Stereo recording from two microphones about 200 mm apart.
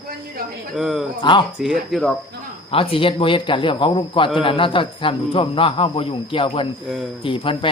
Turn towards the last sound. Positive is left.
turn(degrees=25)  # may be behind; listen again after turning